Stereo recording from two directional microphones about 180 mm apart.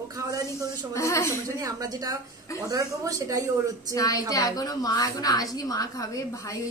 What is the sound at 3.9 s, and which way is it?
A woman's voice, 20° left (ahead or behind).